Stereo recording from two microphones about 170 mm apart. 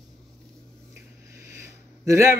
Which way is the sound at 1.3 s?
20° right (ahead or behind).